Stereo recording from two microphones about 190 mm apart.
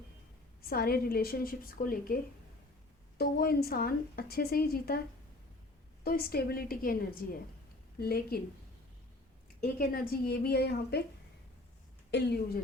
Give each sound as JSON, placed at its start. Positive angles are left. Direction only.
{"t": 0.6, "sound": "a woman's voice", "side_deg": 55}
{"t": 3.2, "sound": "a woman's voice", "side_deg": 55}
{"t": 6.1, "sound": "a woman's voice", "side_deg": 55}
{"t": 9.7, "sound": "a woman's voice", "side_deg": 50}
{"t": 12.1, "sound": "a woman's voice", "side_deg": 60}